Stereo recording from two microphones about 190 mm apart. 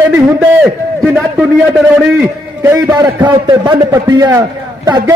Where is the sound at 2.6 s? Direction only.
20° right (ahead or behind).